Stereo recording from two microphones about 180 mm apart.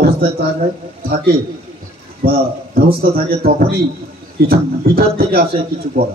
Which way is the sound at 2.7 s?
55° right (ahead or behind).